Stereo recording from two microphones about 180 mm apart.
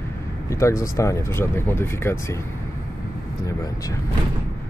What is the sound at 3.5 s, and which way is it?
Speech, 20° left (ahead or behind).